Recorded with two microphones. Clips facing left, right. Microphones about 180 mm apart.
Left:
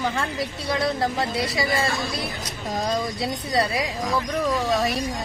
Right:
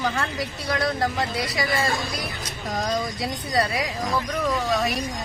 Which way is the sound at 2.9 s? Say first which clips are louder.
Left 2 dB; 25° left (ahead or behind).